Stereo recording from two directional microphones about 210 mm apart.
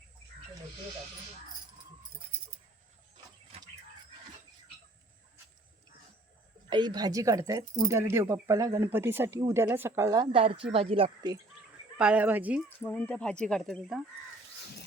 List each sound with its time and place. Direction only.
6.7 s speech: 20° right (ahead or behind)
11.9 s speech: 5° right (ahead or behind)
12.8 s speech: 5° left (ahead or behind)